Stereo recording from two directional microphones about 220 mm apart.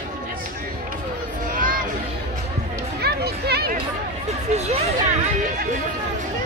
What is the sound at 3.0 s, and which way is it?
Music, 45° right (ahead or behind).